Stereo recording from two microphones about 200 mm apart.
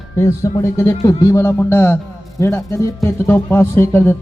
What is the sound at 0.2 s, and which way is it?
A man's voice, 15° left (ahead or behind).